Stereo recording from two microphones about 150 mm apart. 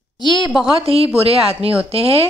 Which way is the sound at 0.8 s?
40° right (ahead or behind).